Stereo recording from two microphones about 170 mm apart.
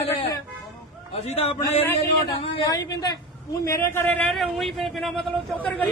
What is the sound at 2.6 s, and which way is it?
A woman's voice, 20° left (ahead or behind).